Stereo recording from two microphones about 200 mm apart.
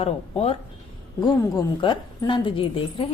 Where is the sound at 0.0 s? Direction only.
30° left (ahead or behind).